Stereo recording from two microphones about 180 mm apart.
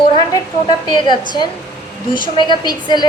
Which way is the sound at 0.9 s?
25° left (ahead or behind).